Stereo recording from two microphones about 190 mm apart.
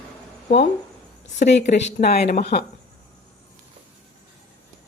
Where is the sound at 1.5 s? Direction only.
65° left (ahead or behind).